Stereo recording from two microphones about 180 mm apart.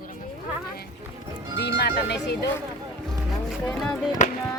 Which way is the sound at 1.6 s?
70° left (ahead or behind).